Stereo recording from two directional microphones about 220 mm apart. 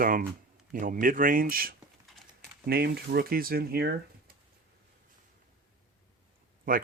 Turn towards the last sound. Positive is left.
turn(degrees=-40)  # may be behind; listen again after turning